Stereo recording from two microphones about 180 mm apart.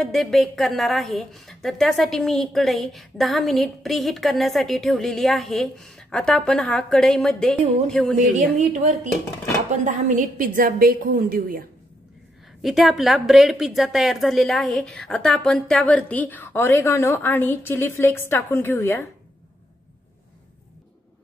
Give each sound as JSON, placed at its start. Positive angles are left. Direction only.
{"t": 0.0, "sound": "a woman's voice", "side_deg": 0}
{"t": 8.4, "sound": "a woman's voice", "side_deg": -40}
{"t": 12.6, "sound": "a woman's voice", "side_deg": 0}